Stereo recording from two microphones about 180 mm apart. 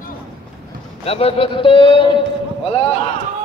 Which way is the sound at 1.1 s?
35° left (ahead or behind).